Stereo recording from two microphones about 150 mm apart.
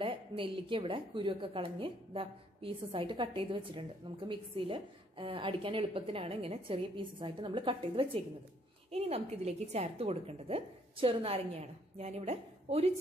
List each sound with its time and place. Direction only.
0.0 s a woman's voice: 35° right (ahead or behind)